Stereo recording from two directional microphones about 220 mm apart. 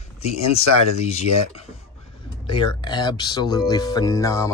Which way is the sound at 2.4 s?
20° left (ahead or behind).